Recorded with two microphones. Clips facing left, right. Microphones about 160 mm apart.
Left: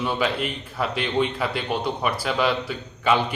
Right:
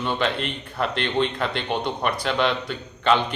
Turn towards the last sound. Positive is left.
turn(degrees=5)  # may be behind; listen again after turning